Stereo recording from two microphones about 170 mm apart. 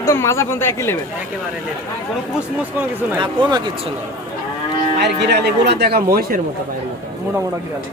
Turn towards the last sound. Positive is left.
turn(degrees=-70)  # may be behind; listen again after turning